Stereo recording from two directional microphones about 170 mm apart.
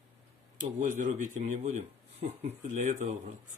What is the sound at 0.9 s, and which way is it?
Speech, 45° right (ahead or behind).